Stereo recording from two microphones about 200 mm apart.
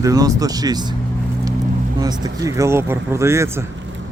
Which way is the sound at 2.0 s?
20° right (ahead or behind).